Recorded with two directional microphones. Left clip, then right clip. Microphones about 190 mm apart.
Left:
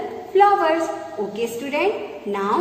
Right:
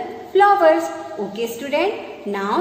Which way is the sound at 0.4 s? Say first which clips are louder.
Right 3 dB; 50° right (ahead or behind).